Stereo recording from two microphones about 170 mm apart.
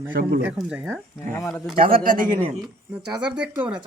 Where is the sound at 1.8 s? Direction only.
55° right (ahead or behind).